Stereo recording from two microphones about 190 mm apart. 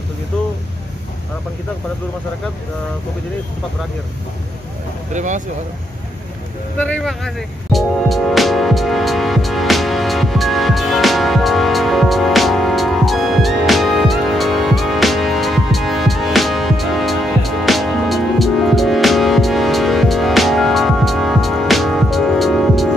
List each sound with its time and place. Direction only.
5.1 s speech: 40° right (ahead or behind)
6.8 s music: 5° left (ahead or behind)